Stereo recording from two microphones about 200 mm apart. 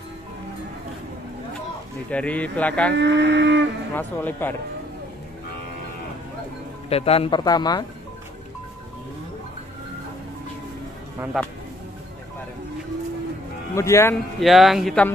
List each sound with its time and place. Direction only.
2.0 s speech: 5° left (ahead or behind)
2.9 s speech: 60° right (ahead or behind)
3.9 s speech: 10° left (ahead or behind)
6.9 s speech: 30° left (ahead or behind)
11.4 s speech: centre (ahead or behind)
13.7 s speech: 15° left (ahead or behind)
14.4 s speech: centre (ahead or behind)